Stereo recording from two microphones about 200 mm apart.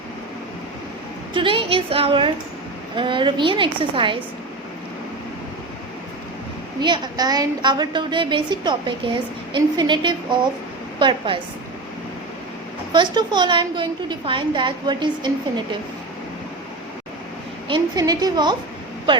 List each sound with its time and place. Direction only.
1.3 s a woman's voice: 25° right (ahead or behind)
6.7 s a woman's voice: 20° right (ahead or behind)
12.9 s a woman's voice: 20° right (ahead or behind)
17.7 s a woman's voice: 20° right (ahead or behind)